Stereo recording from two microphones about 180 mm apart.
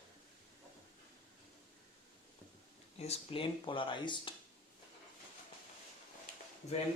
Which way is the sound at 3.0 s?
30° left (ahead or behind).